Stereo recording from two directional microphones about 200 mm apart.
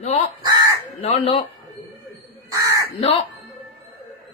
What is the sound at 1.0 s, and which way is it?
Speech, 30° left (ahead or behind).